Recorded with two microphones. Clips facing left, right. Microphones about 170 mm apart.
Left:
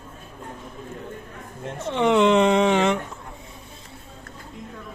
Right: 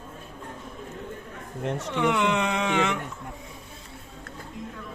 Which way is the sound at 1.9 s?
25° left (ahead or behind).